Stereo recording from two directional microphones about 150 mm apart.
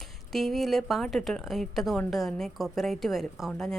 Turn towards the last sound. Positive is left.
turn(degrees=0)  # may be behind; listen again after turning